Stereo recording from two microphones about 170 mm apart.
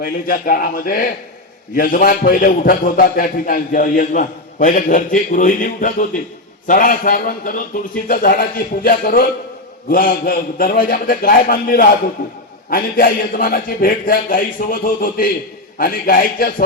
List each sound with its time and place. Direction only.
0.0 s a man's voice: 55° left (ahead or behind)